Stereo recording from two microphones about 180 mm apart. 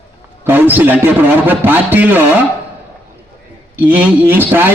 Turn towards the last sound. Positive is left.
turn(degrees=-10)  # may be behind; listen again after turning